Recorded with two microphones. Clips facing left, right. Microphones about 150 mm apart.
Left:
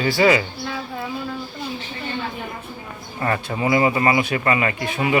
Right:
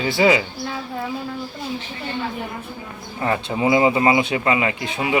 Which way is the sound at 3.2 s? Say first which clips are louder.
Right 2 dB; 15° right (ahead or behind).